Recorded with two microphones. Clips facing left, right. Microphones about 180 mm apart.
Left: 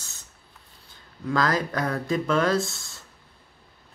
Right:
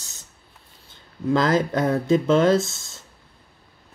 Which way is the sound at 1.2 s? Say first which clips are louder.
Right 5 dB; 25° right (ahead or behind).